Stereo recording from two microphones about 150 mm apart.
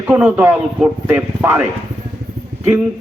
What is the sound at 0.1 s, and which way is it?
A man's voice, 10° right (ahead or behind).